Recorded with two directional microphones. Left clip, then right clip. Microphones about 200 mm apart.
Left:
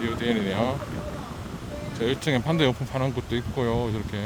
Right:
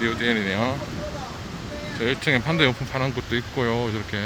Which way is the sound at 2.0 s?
20° left (ahead or behind).